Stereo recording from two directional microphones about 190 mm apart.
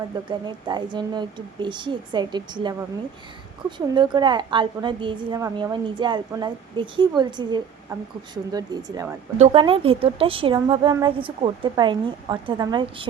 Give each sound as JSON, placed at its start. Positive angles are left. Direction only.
{"t": 0.3, "sound": "a woman's voice", "side_deg": -25}
{"t": 3.8, "sound": "a woman's voice", "side_deg": -25}
{"t": 9.4, "sound": "a woman's voice", "side_deg": -30}